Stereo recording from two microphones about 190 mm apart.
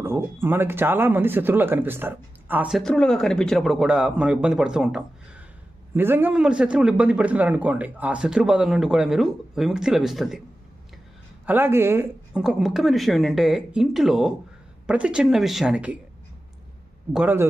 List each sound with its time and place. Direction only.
0.0 s speech: 10° right (ahead or behind)
11.4 s speech: 10° right (ahead or behind)
17.1 s a man's voice: 10° right (ahead or behind)